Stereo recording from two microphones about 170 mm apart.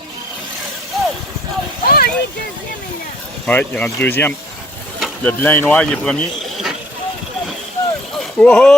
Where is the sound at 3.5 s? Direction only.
10° left (ahead or behind).